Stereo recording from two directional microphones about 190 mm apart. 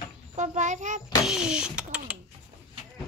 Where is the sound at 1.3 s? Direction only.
5° right (ahead or behind).